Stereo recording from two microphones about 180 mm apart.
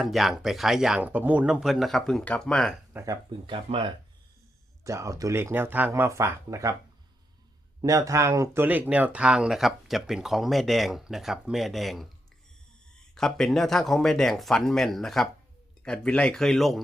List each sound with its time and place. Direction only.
0.0 s speech: centre (ahead or behind)
2.9 s speech: 15° right (ahead or behind)
4.8 s speech: 15° right (ahead or behind)
7.8 s speech: 20° right (ahead or behind); by 12.0 s centre (ahead or behind)
13.1 s speech: 5° left (ahead or behind)